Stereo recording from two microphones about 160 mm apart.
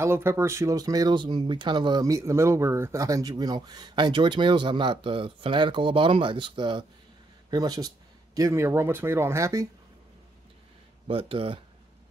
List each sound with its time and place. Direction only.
0.0 s speech: 15° right (ahead or behind)
11.1 s speech: 35° right (ahead or behind)